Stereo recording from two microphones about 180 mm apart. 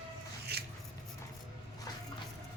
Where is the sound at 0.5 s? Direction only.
65° right (ahead or behind).